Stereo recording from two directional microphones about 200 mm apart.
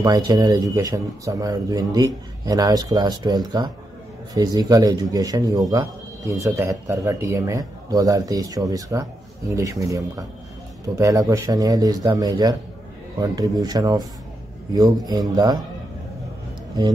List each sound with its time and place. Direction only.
0.0 s a man's voice: 20° right (ahead or behind)